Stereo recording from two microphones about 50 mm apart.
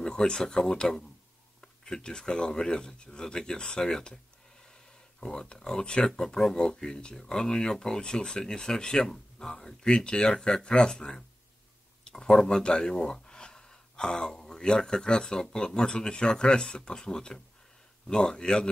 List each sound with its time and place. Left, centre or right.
0.0 s speech: centre
5.2 s speech: centre